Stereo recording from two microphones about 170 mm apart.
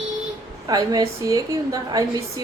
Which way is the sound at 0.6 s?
20° right (ahead or behind).